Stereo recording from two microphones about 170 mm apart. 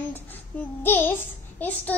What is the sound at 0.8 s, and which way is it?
Speech, 10° left (ahead or behind).